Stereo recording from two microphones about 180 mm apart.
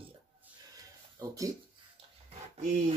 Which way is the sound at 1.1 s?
20° right (ahead or behind).